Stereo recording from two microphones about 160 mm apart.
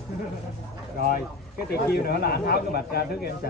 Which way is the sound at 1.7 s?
75° left (ahead or behind).